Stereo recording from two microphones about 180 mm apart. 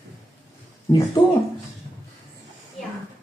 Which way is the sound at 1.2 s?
25° left (ahead or behind).